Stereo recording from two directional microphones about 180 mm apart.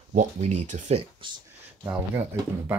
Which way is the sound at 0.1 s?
40° right (ahead or behind).